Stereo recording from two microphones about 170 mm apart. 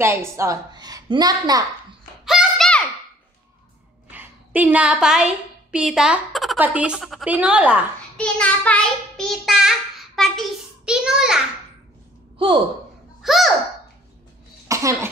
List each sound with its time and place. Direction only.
0.0 s a woman's voice: 15° right (ahead or behind)
2.2 s a sound: centre (ahead or behind)
4.1 s a woman's voice: 10° right (ahead or behind)
8.2 s child singing: 5° left (ahead or behind)
13.2 s a sound: centre (ahead or behind)
14.7 s cough: 20° right (ahead or behind)